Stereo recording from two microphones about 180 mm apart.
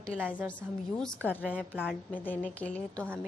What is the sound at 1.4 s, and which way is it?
Speech, 5° right (ahead or behind).